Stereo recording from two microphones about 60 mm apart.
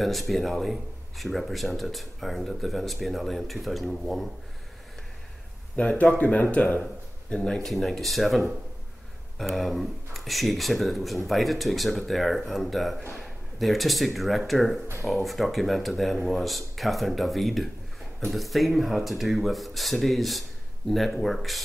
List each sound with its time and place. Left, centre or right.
0.0 s speech: centre
5.8 s speech: left; by 21.5 s centre